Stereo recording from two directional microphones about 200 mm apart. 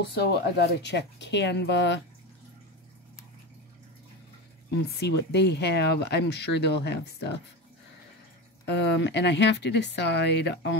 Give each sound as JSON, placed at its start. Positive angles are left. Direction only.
{"t": 0.0, "sound": "speech", "side_deg": 55}
{"t": 4.8, "sound": "speech", "side_deg": 55}
{"t": 8.6, "sound": "speech", "side_deg": 60}